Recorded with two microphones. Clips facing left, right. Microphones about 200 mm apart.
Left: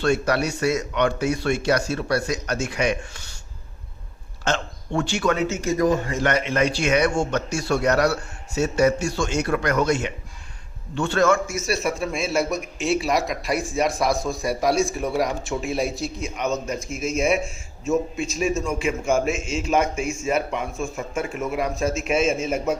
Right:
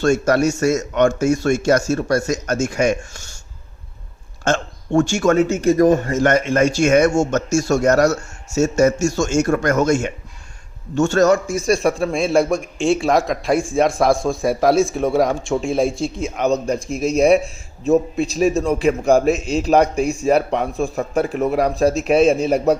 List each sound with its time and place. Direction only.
0.0 s a man's voice: 45° right (ahead or behind)
4.4 s a man's voice: 50° right (ahead or behind)
12.1 s speech: centre (ahead or behind)
13.7 s a man's voice: 50° right (ahead or behind)
14.7 s speech: centre (ahead or behind)
15.0 s a man's voice: 50° right (ahead or behind)
15.4 s speech: centre (ahead or behind)
16.4 s a man's voice: 35° right (ahead or behind)
16.9 s speech: centre (ahead or behind)
17.2 s a man's voice: 35° right (ahead or behind)